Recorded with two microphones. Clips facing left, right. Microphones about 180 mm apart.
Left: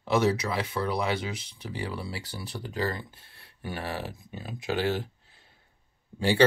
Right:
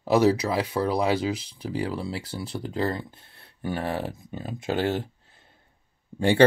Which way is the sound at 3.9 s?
55° right (ahead or behind).